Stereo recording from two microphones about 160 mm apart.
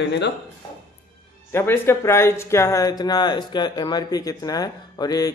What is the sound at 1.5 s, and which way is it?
Speech, 15° left (ahead or behind).